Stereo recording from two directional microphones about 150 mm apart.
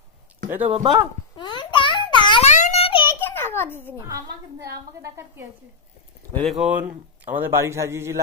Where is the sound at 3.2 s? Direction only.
15° left (ahead or behind).